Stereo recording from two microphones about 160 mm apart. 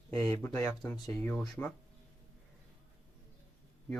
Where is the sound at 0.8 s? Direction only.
5° left (ahead or behind).